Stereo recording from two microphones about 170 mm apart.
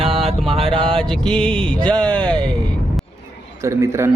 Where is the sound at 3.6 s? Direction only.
15° right (ahead or behind).